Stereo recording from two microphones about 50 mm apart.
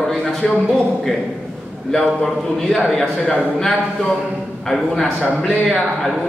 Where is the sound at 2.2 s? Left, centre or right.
Centre.